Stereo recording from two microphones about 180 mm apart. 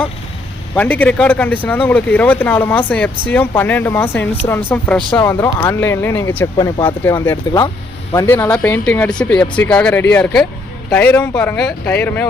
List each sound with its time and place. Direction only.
0.8 s a man's voice: 10° left (ahead or behind)